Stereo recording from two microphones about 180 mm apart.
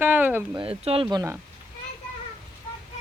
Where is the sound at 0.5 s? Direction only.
30° right (ahead or behind).